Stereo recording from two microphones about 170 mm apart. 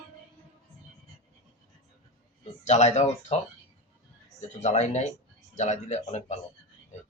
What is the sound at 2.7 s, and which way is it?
Speech, 40° left (ahead or behind).